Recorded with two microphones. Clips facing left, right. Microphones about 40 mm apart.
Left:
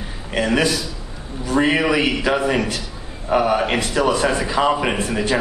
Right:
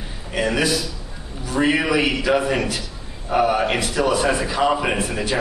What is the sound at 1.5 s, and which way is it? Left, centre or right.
Speech, left.